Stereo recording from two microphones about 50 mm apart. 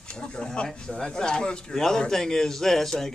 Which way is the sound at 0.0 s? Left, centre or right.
Centre.